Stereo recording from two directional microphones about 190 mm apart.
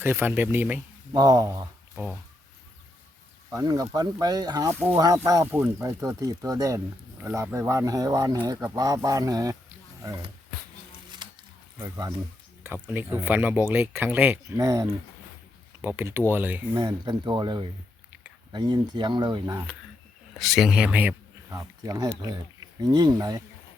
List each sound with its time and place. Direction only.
0.0 s speech: 10° right (ahead or behind)
3.5 s speech: 20° right (ahead or behind)
11.2 s a sound: 25° right (ahead or behind)
11.8 s speech: 15° right (ahead or behind)
16.7 s speech: 20° right (ahead or behind)
20.4 s speech: centre (ahead or behind); by 23.4 s 20° right (ahead or behind)